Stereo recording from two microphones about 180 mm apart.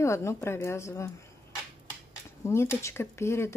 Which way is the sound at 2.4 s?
15° left (ahead or behind).